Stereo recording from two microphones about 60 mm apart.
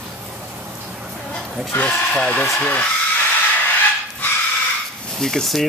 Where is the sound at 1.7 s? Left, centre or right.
Left.